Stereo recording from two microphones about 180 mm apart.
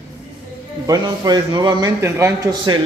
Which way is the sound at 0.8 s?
20° right (ahead or behind).